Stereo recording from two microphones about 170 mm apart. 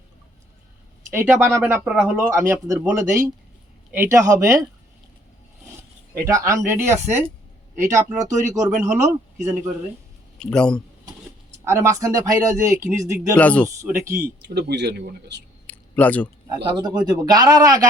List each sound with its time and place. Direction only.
1.1 s speech: 15° right (ahead or behind)
6.1 s speech: 15° right (ahead or behind)
10.4 s speech: 5° left (ahead or behind)
11.6 s speech: 15° right (ahead or behind)
13.3 s speech: 10° left (ahead or behind)
13.8 s speech: 15° right (ahead or behind)
14.4 s speech: 80° right
15.6 s a sound: 10° left (ahead or behind)
16.8 s speech: 25° right (ahead or behind)